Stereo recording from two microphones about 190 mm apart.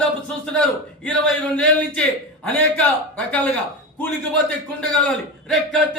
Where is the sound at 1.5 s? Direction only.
5° left (ahead or behind).